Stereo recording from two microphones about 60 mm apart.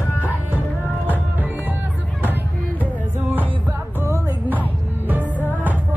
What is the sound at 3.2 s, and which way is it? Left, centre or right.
Music, right.